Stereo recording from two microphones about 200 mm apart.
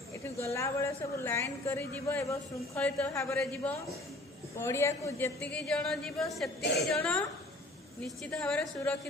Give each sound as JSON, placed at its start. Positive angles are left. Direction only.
{"t": 0.3, "sound": "a woman's voice", "side_deg": 15}
{"t": 6.6, "sound": "a woman's voice", "side_deg": 60}
{"t": 7.0, "sound": "a woman's voice", "side_deg": 5}